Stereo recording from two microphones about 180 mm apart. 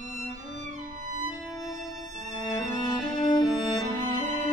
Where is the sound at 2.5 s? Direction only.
20° left (ahead or behind).